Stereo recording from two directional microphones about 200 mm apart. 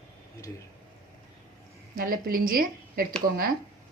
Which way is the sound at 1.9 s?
45° right (ahead or behind).